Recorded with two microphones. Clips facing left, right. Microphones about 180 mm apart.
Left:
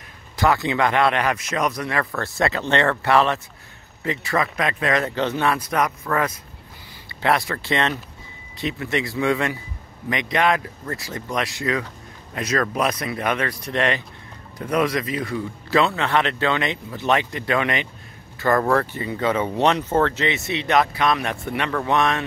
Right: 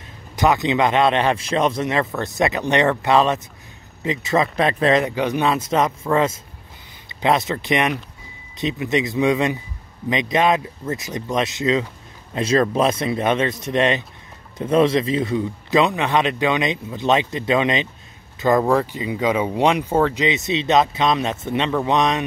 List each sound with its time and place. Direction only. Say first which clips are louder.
0.4 s a man's voice: right 2 dB; 20° right (ahead or behind)
5.0 s a man's voice: right 2 dB; 15° right (ahead or behind)